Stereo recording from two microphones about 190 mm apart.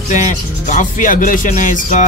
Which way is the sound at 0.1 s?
40° left (ahead or behind).